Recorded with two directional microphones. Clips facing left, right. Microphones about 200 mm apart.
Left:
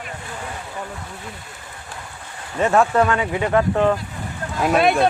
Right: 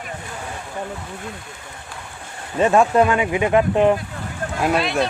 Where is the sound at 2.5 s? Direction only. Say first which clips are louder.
Right 2 dB; 15° right (ahead or behind).